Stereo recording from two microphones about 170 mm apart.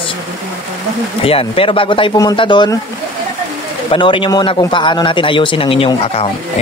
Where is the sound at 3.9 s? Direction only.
30° left (ahead or behind).